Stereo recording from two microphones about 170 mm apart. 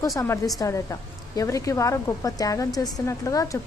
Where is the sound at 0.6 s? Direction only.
20° left (ahead or behind).